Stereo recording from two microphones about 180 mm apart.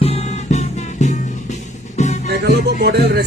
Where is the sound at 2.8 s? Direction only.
65° right (ahead or behind).